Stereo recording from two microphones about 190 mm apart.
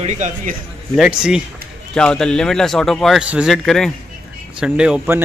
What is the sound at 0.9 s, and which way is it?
A man's voice, 5° right (ahead or behind).